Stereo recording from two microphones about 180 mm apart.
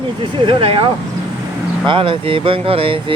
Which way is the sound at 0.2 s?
30° right (ahead or behind).